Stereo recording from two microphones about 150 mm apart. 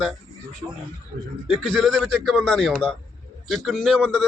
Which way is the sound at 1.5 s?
5° right (ahead or behind).